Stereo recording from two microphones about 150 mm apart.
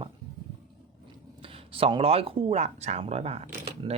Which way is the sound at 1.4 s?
35° right (ahead or behind).